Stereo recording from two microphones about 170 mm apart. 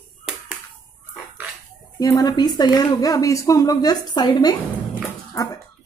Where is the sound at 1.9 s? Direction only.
20° left (ahead or behind).